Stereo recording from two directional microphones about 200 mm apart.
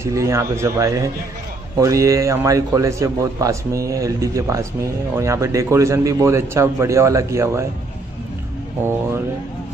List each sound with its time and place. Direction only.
0.0 s a man's voice: 15° right (ahead or behind)